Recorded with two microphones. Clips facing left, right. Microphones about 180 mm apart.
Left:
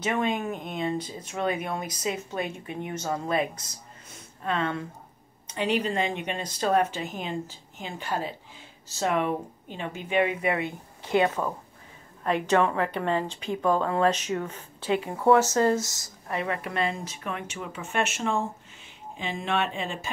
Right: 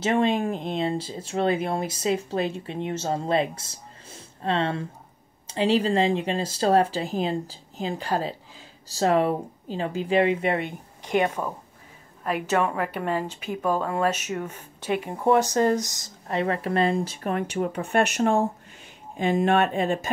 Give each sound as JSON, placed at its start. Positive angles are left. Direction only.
{"t": 0.0, "sound": "speech", "side_deg": -30}
{"t": 11.1, "sound": "speech", "side_deg": -15}
{"t": 16.3, "sound": "speech", "side_deg": -30}